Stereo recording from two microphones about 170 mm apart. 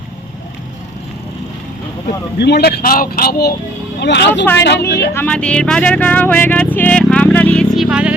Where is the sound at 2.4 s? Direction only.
70° left (ahead or behind).